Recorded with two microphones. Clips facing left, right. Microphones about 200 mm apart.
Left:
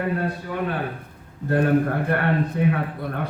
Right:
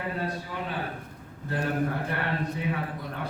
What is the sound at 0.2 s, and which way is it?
A man's voice, 55° left (ahead or behind).